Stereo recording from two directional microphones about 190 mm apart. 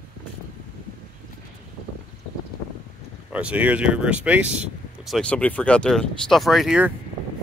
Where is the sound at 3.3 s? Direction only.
5° right (ahead or behind).